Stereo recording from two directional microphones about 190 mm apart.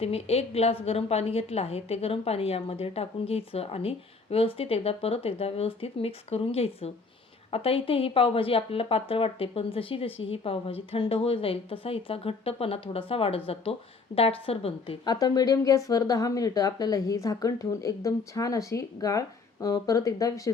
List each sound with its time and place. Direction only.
0.0 s a woman's voice: 30° left (ahead or behind)